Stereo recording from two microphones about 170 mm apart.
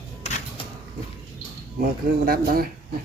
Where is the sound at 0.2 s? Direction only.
40° left (ahead or behind).